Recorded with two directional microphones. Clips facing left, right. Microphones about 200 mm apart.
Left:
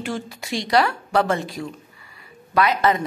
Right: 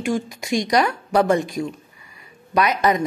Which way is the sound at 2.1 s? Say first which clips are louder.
Right 1 dB; 20° right (ahead or behind).